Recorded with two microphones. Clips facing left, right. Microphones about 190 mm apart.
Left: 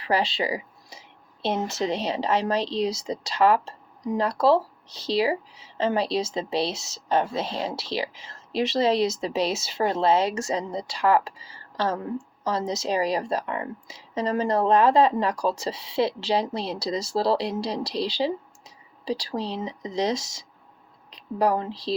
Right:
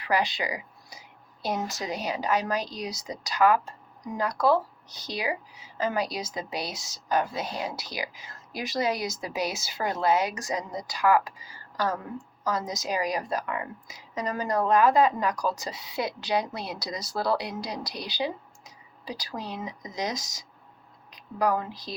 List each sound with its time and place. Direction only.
0.0 s speech: 30° left (ahead or behind)